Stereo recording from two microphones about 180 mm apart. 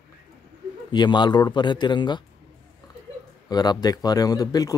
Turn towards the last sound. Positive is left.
turn(degrees=20)  # may be behind; listen again after turning